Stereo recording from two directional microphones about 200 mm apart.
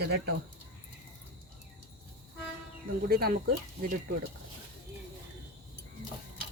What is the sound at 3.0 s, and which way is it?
Speech, 50° right (ahead or behind).